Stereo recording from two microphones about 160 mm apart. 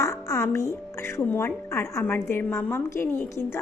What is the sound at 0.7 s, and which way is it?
A woman's voice, 15° left (ahead or behind).